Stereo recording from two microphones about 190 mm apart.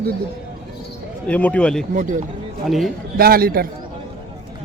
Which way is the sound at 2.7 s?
Centre (ahead or behind).